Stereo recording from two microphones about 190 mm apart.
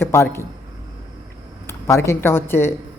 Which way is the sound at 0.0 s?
15° left (ahead or behind).